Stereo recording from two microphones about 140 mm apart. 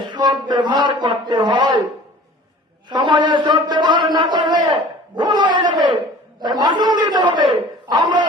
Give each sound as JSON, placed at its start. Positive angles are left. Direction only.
{"t": 0.4, "sound": "a man's voice", "side_deg": -35}
{"t": 2.9, "sound": "a man's voice", "side_deg": -35}